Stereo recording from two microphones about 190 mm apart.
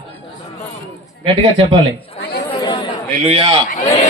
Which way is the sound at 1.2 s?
30° right (ahead or behind).